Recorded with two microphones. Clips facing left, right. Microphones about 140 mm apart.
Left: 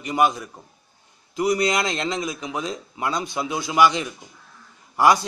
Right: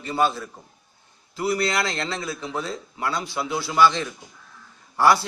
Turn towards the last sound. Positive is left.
turn(degrees=15)  # may be behind; listen again after turning